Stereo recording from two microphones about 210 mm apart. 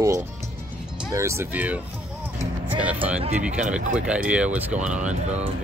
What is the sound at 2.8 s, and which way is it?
Speech, 5° right (ahead or behind).